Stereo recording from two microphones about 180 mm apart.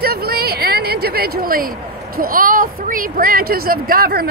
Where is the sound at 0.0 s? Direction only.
60° right (ahead or behind).